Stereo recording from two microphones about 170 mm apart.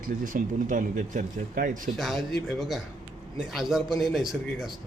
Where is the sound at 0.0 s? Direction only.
55° right (ahead or behind).